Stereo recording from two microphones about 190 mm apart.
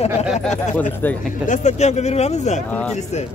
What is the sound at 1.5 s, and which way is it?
Speech, 40° left (ahead or behind).